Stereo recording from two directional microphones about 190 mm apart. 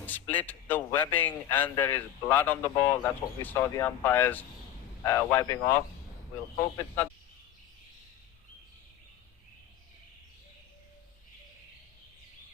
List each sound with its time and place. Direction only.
0.0 s speech: 10° left (ahead or behind)